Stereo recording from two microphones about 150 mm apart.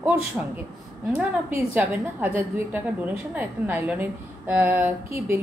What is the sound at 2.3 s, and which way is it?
A woman's voice, 15° right (ahead or behind).